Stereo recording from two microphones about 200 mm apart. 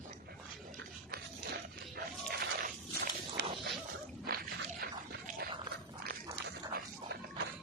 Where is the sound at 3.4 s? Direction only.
60° right (ahead or behind).